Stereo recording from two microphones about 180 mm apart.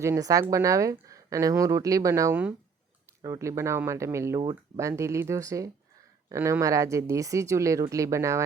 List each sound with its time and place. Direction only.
0.0 s a woman's voice: 15° right (ahead or behind)